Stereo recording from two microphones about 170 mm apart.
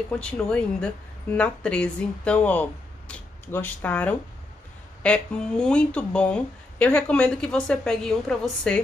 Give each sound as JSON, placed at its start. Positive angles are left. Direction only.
{"t": 0.2, "sound": "speech", "side_deg": 5}